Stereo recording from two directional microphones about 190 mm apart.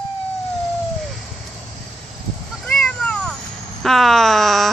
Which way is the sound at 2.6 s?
5° left (ahead or behind).